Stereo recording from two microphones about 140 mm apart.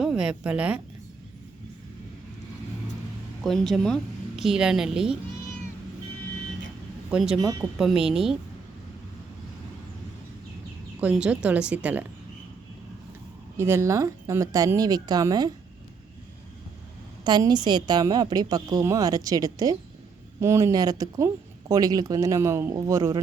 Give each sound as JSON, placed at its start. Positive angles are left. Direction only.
{"t": 0.0, "sound": "speech", "side_deg": -5}
{"t": 3.4, "sound": "speech", "side_deg": 0}
{"t": 7.1, "sound": "a woman's voice", "side_deg": -5}
{"t": 11.0, "sound": "speech", "side_deg": -10}
{"t": 13.6, "sound": "speech", "side_deg": -20}
{"t": 17.2, "sound": "speech", "side_deg": -30}